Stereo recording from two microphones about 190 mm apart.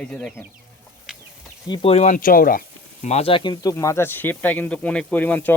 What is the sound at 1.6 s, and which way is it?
Speech, 25° left (ahead or behind).